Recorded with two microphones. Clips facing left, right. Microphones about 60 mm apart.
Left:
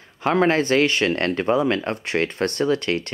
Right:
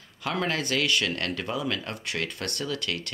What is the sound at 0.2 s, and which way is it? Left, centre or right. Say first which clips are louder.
Speech: left 10 dB; left.